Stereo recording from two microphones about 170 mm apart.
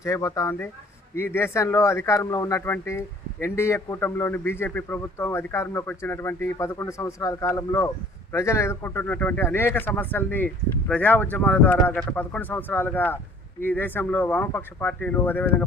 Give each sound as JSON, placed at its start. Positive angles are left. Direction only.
{"t": 0.0, "sound": "speech", "side_deg": 20}